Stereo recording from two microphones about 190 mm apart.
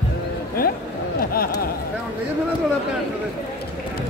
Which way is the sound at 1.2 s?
50° left (ahead or behind).